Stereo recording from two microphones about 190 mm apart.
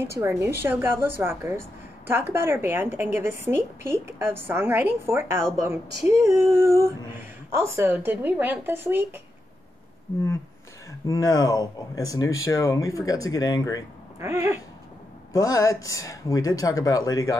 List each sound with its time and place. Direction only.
0.0 s a woman's voice: 15° right (ahead or behind)
11.1 s speech: 20° left (ahead or behind)
14.2 s a woman's voice: 15° right (ahead or behind)
15.3 s speech: 20° left (ahead or behind)